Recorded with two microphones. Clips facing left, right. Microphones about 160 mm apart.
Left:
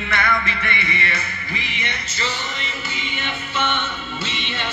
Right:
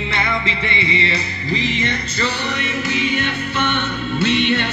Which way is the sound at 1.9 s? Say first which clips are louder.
Right 5 dB; 65° right (ahead or behind).